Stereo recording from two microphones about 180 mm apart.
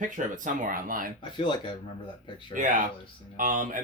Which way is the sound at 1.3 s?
25° left (ahead or behind).